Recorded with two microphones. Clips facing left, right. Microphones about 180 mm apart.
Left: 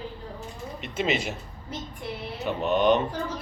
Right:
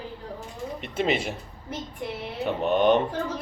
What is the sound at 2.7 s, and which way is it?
Speech, 55° right (ahead or behind).